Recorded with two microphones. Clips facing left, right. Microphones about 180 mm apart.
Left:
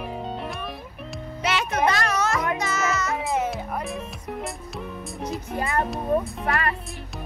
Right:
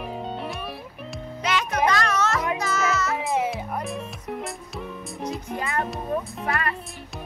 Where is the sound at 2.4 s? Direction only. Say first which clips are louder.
Even; 10° right (ahead or behind).